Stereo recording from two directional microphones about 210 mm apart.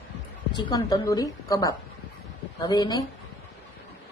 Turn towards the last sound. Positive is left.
turn(degrees=20)  # may be behind; listen again after turning